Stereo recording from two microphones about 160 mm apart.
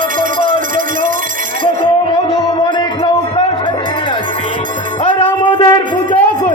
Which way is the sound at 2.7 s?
25° left (ahead or behind).